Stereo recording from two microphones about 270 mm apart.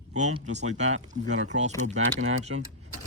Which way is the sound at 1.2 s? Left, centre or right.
Right.